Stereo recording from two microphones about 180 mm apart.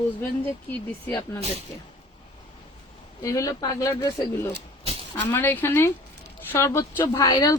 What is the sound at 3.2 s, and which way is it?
Speech, 20° left (ahead or behind).